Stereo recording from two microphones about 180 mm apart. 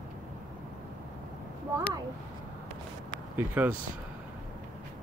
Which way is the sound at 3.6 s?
10° right (ahead or behind).